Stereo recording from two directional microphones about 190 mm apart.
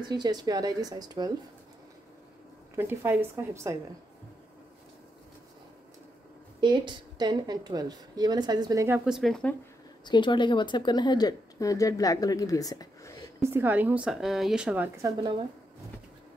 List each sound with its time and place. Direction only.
0.0 s a woman's voice: 20° right (ahead or behind)
2.7 s speech: 10° right (ahead or behind)
6.6 s a woman's voice: 25° right (ahead or behind); by 9.6 s 5° left (ahead or behind)
10.0 s speech: 25° left (ahead or behind)
13.4 s speech: 10° right (ahead or behind)